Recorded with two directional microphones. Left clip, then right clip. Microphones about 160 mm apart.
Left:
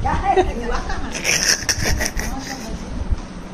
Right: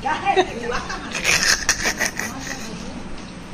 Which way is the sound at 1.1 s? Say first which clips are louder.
Right 1 dB; 15° left (ahead or behind).